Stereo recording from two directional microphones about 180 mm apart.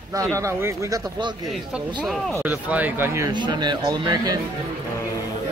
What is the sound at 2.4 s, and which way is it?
Speech, 10° right (ahead or behind).